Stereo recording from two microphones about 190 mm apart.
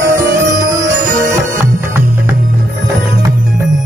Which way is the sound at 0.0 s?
15° right (ahead or behind).